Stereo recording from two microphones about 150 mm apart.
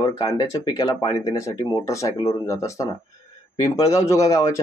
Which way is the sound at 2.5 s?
20° left (ahead or behind).